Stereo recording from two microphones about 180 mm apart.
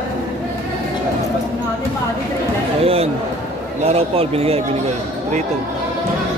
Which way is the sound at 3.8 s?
35° right (ahead or behind).